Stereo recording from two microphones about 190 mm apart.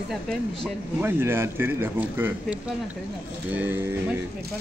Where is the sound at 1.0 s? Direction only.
10° right (ahead or behind).